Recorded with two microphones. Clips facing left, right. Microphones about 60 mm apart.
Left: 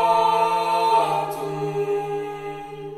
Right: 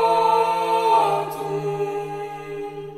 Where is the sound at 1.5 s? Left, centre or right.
Centre.